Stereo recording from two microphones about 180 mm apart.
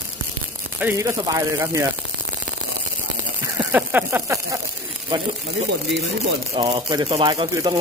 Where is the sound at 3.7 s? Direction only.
10° right (ahead or behind).